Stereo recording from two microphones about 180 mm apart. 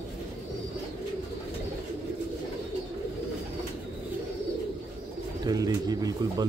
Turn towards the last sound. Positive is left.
turn(degrees=-20)  # may be behind; listen again after turning